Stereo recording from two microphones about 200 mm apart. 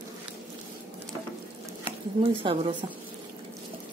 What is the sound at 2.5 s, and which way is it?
Speech, 25° right (ahead or behind).